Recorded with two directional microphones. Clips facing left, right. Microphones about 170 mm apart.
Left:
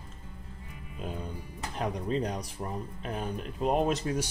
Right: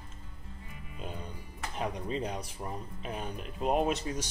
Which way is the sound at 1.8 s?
Centre (ahead or behind).